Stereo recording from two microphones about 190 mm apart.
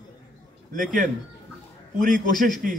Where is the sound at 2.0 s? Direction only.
45° right (ahead or behind).